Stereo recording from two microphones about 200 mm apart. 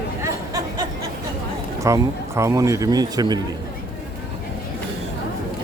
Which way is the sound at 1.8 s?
15° right (ahead or behind).